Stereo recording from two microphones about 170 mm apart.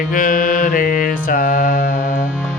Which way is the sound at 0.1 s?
50° left (ahead or behind).